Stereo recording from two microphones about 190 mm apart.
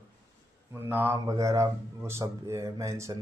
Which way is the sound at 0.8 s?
10° right (ahead or behind).